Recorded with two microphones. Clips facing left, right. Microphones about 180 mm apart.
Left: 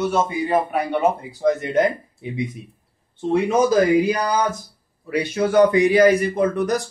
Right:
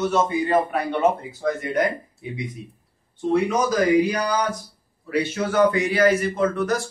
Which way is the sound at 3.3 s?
25° left (ahead or behind).